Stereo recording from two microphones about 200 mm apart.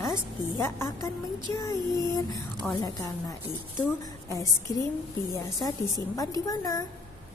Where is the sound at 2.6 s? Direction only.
5° left (ahead or behind).